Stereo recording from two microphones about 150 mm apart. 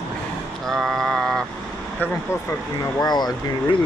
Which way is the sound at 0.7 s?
Centre (ahead or behind).